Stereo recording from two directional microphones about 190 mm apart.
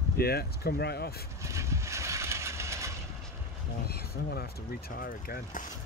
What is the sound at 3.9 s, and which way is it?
Speech, 55° left (ahead or behind).